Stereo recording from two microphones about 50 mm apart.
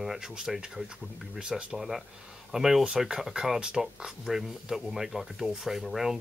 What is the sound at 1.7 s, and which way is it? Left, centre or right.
Speech, centre.